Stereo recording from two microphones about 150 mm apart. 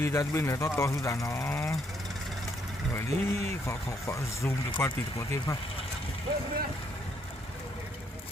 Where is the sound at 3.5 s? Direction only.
20° left (ahead or behind).